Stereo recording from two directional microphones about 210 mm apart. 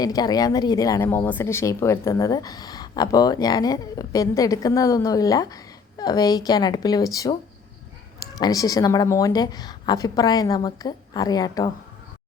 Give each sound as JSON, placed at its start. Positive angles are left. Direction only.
{"t": 0.0, "sound": "speech", "side_deg": 20}
{"t": 8.4, "sound": "a woman's voice", "side_deg": 15}